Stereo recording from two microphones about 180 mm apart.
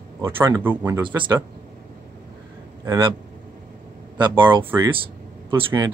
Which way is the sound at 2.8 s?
15° right (ahead or behind).